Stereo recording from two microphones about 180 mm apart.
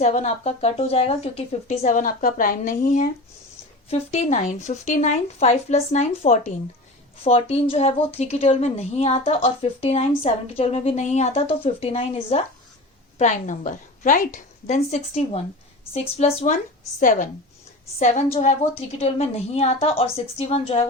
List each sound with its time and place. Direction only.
0.0 s a woman's voice: 35° left (ahead or behind)
3.8 s a woman's voice: 35° left (ahead or behind)
13.1 s a woman's voice: 40° left (ahead or behind)